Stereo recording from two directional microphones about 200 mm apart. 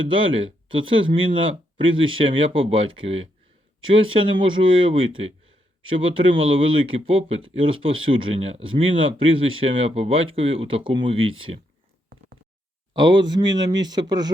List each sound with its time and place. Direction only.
0.0 s speech: 25° right (ahead or behind)
12.9 s speech: 20° right (ahead or behind)